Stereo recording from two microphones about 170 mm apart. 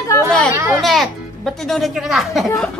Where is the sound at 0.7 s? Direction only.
Centre (ahead or behind).